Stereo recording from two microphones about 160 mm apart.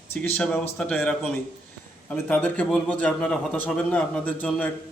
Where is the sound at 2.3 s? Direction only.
5° left (ahead or behind).